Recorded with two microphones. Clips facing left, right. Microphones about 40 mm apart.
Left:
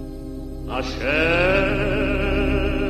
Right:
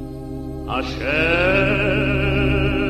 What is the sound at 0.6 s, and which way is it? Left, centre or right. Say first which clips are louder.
Music: right 2 dB; right.